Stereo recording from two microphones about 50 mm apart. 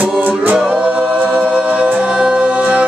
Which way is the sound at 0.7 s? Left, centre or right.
Right.